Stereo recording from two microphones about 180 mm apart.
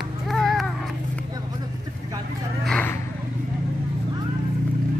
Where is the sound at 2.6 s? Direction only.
5° left (ahead or behind).